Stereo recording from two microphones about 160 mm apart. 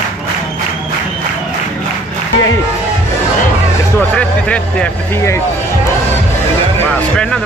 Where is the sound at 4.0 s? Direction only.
10° left (ahead or behind).